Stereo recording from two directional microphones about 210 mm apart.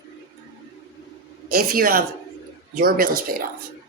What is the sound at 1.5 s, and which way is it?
Speech, 45° right (ahead or behind).